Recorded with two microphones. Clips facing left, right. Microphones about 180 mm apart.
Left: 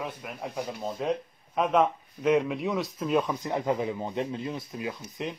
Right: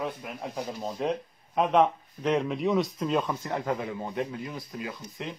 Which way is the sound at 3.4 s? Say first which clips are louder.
Left 3 dB; 20° left (ahead or behind).